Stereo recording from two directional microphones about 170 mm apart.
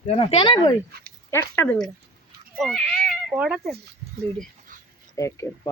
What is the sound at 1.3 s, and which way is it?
Speech, 15° left (ahead or behind).